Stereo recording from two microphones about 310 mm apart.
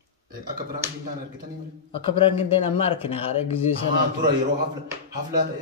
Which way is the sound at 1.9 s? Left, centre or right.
Centre.